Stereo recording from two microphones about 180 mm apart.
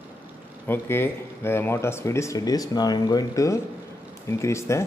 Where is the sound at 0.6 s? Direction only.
10° left (ahead or behind).